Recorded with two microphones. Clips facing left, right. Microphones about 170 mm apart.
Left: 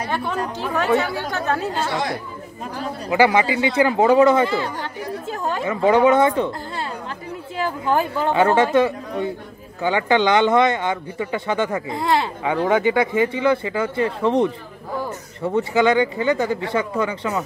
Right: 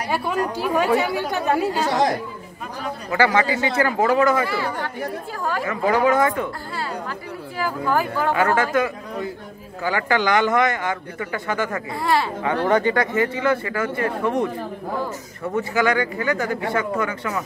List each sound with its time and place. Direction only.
0.1 s speech: 10° right (ahead or behind)
3.1 s speech: 15° left (ahead or behind)
7.5 s speech: 20° left (ahead or behind)
12.6 s speech: 10° left (ahead or behind)
15.5 s speech: 20° left (ahead or behind)